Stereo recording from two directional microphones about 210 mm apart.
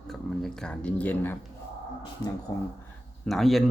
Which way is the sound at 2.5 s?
20° left (ahead or behind).